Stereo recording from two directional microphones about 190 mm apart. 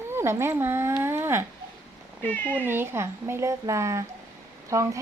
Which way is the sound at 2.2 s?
10° left (ahead or behind).